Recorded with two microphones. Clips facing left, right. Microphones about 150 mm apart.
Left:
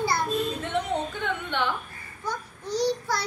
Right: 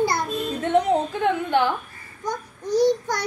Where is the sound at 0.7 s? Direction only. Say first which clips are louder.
Right 8 dB; 35° right (ahead or behind).